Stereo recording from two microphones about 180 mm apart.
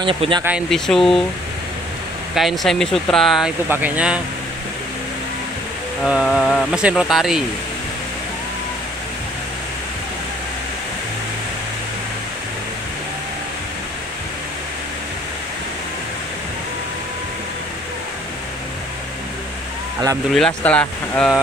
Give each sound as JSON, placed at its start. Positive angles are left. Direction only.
{"t": 0.0, "sound": "speech", "side_deg": -30}
{"t": 0.4, "sound": "speech", "side_deg": -5}
{"t": 2.3, "sound": "speech", "side_deg": 0}
{"t": 6.0, "sound": "speech", "side_deg": 0}
{"t": 20.3, "sound": "speech", "side_deg": 5}